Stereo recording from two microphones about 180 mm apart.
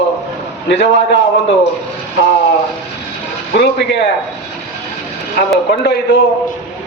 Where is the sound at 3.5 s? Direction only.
70° left (ahead or behind).